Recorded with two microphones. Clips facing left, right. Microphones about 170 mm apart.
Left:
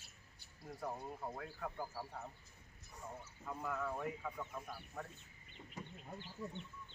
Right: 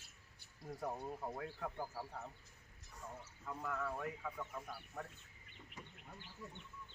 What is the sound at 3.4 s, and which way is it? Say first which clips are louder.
Speech: left 1 dB; 5° left (ahead or behind).